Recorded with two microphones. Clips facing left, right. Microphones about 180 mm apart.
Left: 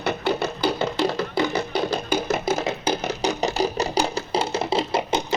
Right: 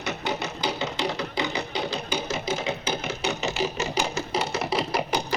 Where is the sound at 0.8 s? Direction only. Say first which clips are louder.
Left 5 dB; 55° left (ahead or behind).